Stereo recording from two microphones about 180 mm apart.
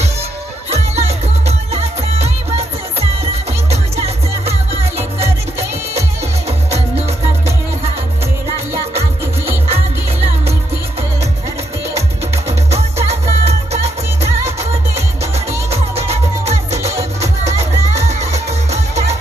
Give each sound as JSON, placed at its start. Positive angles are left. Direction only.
{"t": 0.7, "sound": "music", "side_deg": -35}
{"t": 6.7, "sound": "music", "side_deg": -35}
{"t": 9.6, "sound": "music", "side_deg": -35}
{"t": 12.5, "sound": "music", "side_deg": -35}
{"t": 15.7, "sound": "music", "side_deg": -35}